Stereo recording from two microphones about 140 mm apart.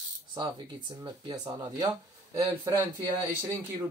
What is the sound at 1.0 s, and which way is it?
Speech, 30° right (ahead or behind).